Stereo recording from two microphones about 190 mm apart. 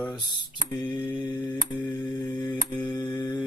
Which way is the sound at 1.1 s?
25° left (ahead or behind).